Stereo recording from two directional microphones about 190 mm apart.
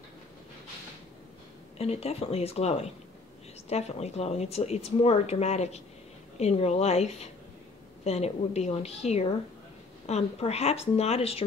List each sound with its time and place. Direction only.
1.8 s speech: 30° left (ahead or behind)